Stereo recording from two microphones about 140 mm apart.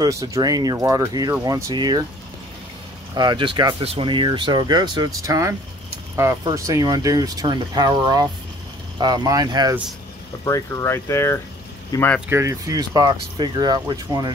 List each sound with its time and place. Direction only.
0.0 s speech: 25° right (ahead or behind)
3.2 s speech: 35° right (ahead or behind)
6.5 s speech: 25° right (ahead or behind)
10.4 s speech: 20° left (ahead or behind)
12.3 s speech: 20° right (ahead or behind)